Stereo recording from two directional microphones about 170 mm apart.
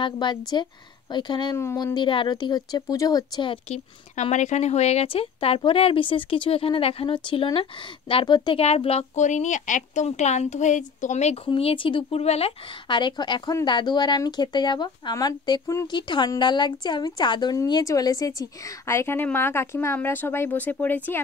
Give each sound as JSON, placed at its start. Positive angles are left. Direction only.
{"t": 0.0, "sound": "speech", "side_deg": 25}
{"t": 1.6, "sound": "speech", "side_deg": 15}
{"t": 3.6, "sound": "speech", "side_deg": 40}
{"t": 11.4, "sound": "speech", "side_deg": 30}